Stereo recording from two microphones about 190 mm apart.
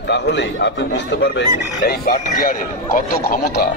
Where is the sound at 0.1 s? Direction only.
65° left (ahead or behind).